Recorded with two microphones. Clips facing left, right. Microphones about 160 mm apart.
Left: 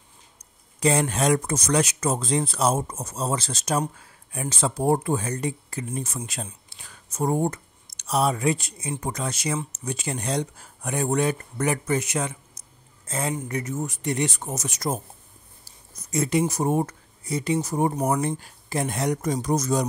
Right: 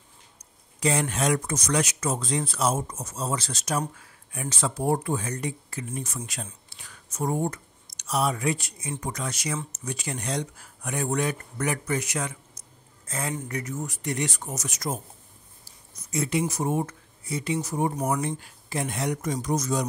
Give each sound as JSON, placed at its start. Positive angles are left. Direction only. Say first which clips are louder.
{"t": 0.7, "sound": "speech", "louder": "left 3 dB", "side_deg": 35}
{"t": 16.1, "sound": "speech", "louder": "left 3 dB", "side_deg": 40}